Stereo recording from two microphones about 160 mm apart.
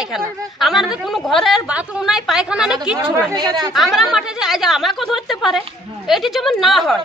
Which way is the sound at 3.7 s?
Centre (ahead or behind).